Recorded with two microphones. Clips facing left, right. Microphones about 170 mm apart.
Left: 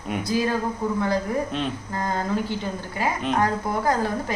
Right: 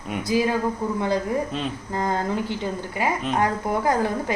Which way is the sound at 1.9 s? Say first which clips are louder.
Right 2 dB; 20° right (ahead or behind).